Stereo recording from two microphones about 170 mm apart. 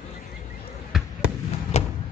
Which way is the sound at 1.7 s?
40° left (ahead or behind).